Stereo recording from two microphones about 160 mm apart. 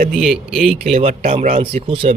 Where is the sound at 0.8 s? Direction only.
45° right (ahead or behind).